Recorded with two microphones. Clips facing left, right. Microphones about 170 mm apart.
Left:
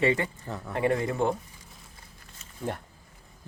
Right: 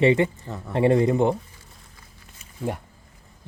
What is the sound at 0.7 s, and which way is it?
Speech, 25° right (ahead or behind).